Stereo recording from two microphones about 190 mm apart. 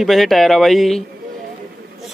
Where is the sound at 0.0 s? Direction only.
Centre (ahead or behind).